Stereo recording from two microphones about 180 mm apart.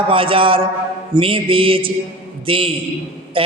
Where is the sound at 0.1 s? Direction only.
30° right (ahead or behind).